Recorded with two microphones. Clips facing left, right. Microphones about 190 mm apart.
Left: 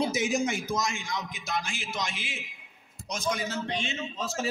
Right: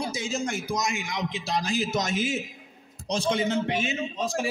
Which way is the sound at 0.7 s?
20° right (ahead or behind).